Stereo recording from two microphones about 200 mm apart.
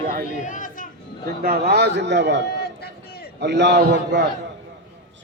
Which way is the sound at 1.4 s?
50° right (ahead or behind).